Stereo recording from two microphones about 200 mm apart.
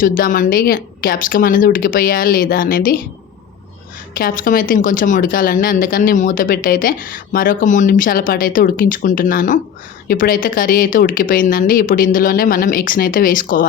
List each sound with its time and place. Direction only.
0.0 s speech: 45° left (ahead or behind)
4.2 s speech: 45° left (ahead or behind)